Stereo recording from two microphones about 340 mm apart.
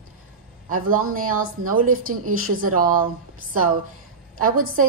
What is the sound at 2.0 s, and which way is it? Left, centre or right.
Speech, right.